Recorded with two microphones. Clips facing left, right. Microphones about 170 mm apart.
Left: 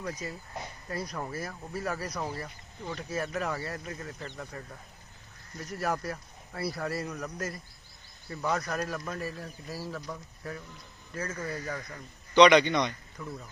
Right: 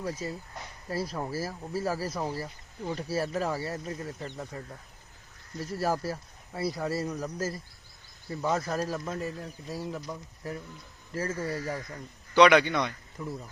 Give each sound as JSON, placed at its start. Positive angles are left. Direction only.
{"t": 0.0, "sound": "speech", "side_deg": -25}
{"t": 5.5, "sound": "speech", "side_deg": -30}
{"t": 12.3, "sound": "a man's voice", "side_deg": -5}
{"t": 13.2, "sound": "speech", "side_deg": -20}